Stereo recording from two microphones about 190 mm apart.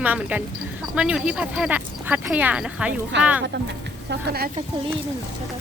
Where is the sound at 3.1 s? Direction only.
65° right (ahead or behind); by 4.6 s 50° right (ahead or behind).